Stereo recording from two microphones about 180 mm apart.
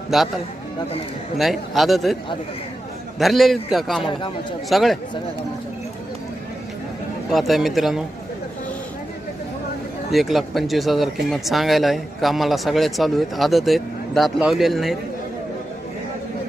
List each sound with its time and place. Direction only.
0.1 s speech: centre (ahead or behind)
1.4 s speech: centre (ahead or behind)
3.2 s speech: centre (ahead or behind)
4.0 s speech: 25° left (ahead or behind)
4.6 s speech: centre (ahead or behind)
7.2 s speech: centre (ahead or behind)
10.1 s speech: centre (ahead or behind)